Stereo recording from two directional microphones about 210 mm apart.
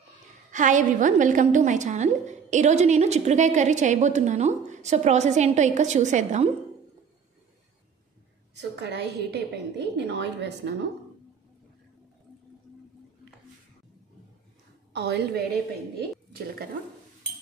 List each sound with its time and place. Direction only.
0.5 s a woman's voice: 35° right (ahead or behind)
8.5 s a woman's voice: 55° right (ahead or behind)
15.0 s a woman's voice: 50° right (ahead or behind)